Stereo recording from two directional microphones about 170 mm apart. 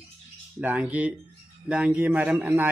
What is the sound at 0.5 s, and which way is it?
A man's voice, 5° right (ahead or behind).